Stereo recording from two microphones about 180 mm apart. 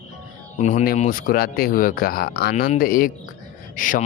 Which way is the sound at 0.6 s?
40° left (ahead or behind).